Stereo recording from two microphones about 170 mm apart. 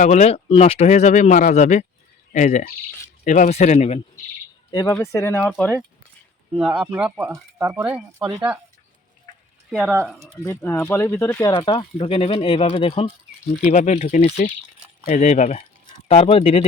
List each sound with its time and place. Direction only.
0.0 s speech: 40° left (ahead or behind)
4.7 s speech: 20° left (ahead or behind)
6.6 s speech: 5° right (ahead or behind)
9.8 s speech: 10° right (ahead or behind)
10.4 s speech: 15° left (ahead or behind)
11.6 s speech: 30° left (ahead or behind)
13.6 s speech: 45° left (ahead or behind)